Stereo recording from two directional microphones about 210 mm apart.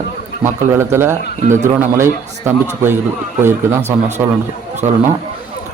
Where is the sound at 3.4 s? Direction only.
10° right (ahead or behind).